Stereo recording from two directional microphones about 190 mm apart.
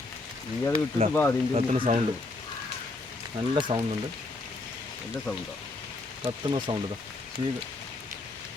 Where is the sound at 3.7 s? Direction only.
25° right (ahead or behind).